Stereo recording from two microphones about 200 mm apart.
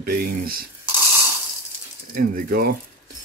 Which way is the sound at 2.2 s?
50° right (ahead or behind).